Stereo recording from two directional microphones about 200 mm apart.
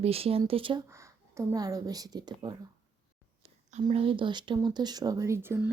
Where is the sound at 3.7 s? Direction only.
35° right (ahead or behind).